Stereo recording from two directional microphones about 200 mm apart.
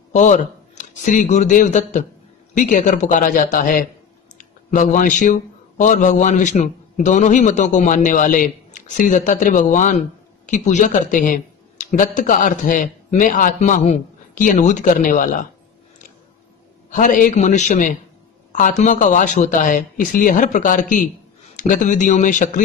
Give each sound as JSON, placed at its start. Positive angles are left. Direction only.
{"t": 0.1, "sound": "a man's voice", "side_deg": 35}
{"t": 16.9, "sound": "a man's voice", "side_deg": 40}